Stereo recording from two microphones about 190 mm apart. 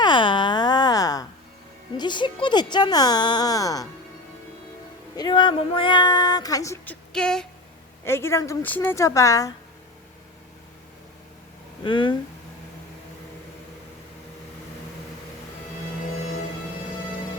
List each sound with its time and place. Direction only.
0.0 s a sound: 25° left (ahead or behind)
2.0 s speech: 25° left (ahead or behind)
5.1 s speech: 20° left (ahead or behind)
7.1 s a woman's voice: 5° left (ahead or behind)
11.9 s speech: 25° left (ahead or behind)